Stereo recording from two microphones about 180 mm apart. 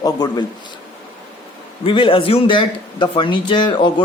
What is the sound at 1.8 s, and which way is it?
Speech, 30° left (ahead or behind).